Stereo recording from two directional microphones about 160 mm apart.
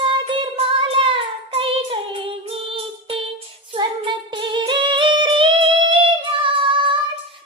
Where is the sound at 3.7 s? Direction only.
30° right (ahead or behind).